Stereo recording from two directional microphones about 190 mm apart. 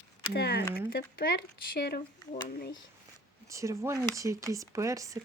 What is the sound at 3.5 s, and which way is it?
Speech, 15° right (ahead or behind).